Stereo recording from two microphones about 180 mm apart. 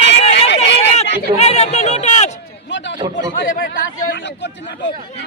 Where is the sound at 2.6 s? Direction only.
80° left.